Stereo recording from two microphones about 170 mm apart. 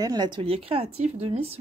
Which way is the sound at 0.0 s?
25° right (ahead or behind).